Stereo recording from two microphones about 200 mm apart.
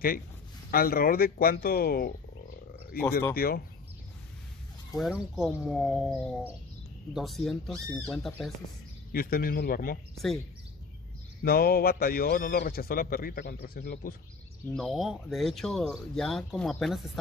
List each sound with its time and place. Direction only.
0.7 s a man's voice: 50° left (ahead or behind)
3.0 s speech: 10° left (ahead or behind)
3.3 s a man's voice: 50° left (ahead or behind)
5.0 s speech: 5° right (ahead or behind)
9.1 s a man's voice: 45° left (ahead or behind)
10.1 s speech: centre (ahead or behind)
11.4 s a man's voice: 50° left (ahead or behind)
14.7 s speech: centre (ahead or behind)